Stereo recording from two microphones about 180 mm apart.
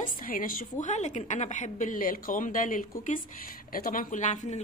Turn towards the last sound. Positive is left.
turn(degrees=45)  # may be behind; listen again after turning